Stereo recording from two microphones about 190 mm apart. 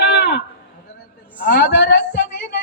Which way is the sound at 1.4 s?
60° left (ahead or behind).